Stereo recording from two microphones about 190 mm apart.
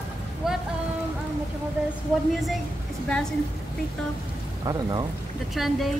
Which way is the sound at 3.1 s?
5° left (ahead or behind).